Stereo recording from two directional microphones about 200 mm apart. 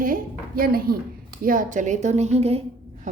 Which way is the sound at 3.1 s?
35° right (ahead or behind).